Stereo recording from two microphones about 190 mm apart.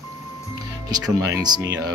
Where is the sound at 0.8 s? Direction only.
20° right (ahead or behind).